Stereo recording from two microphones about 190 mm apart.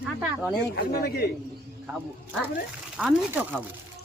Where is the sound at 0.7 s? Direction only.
55° left (ahead or behind).